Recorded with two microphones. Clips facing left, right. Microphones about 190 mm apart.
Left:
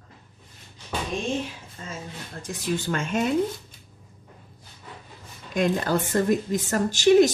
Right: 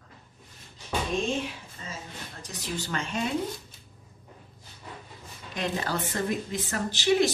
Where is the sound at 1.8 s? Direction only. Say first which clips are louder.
Left 4 dB; 45° left (ahead or behind).